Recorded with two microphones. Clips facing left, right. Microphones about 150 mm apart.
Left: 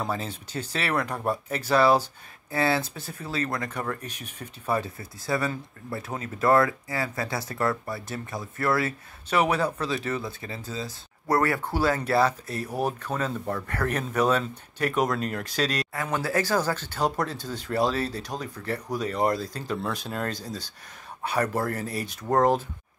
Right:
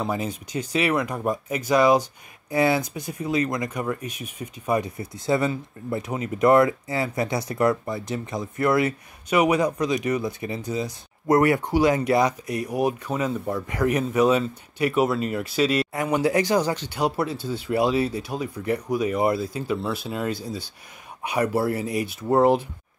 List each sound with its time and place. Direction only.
0.1 s speech: 15° right (ahead or behind)